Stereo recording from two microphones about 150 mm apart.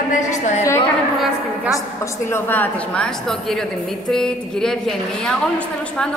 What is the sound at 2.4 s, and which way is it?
A woman's voice, 10° left (ahead or behind).